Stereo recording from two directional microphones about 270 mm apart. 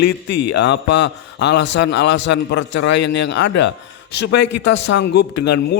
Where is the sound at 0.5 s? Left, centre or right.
Left.